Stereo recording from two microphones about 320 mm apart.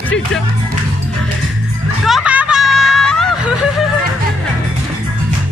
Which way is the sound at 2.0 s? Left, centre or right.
Centre.